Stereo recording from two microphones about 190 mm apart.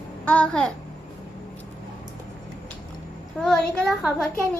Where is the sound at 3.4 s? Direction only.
Centre (ahead or behind).